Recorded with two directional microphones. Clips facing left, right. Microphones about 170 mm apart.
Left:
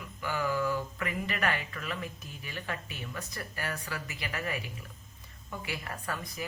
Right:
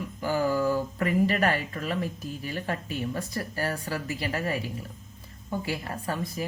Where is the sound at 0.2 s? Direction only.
35° right (ahead or behind).